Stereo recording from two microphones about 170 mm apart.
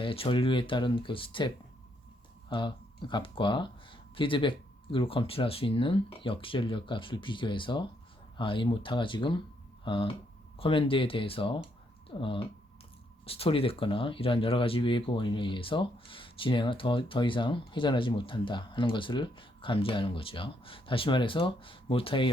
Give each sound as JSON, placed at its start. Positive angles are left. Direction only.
{"t": 0.0, "sound": "speech", "side_deg": 30}